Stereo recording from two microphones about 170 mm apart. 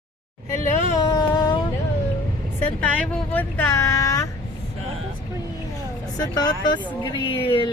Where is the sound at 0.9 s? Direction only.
25° left (ahead or behind).